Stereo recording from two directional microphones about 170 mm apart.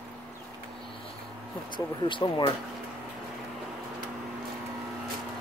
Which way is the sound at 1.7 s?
30° left (ahead or behind).